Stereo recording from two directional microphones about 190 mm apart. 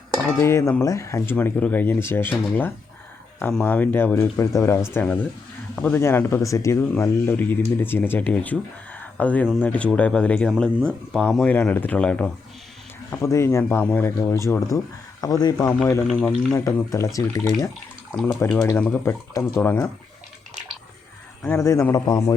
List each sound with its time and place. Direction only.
0.3 s speech: 15° left (ahead or behind)
16.5 s speech: 15° left (ahead or behind)
21.4 s speech: 15° left (ahead or behind)